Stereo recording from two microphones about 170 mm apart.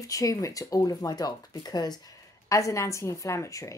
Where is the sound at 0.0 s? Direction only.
20° left (ahead or behind).